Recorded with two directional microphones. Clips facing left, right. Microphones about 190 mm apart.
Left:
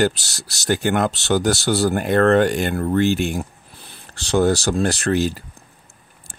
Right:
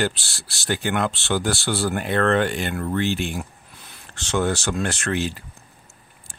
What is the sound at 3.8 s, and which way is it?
Speech, 35° left (ahead or behind).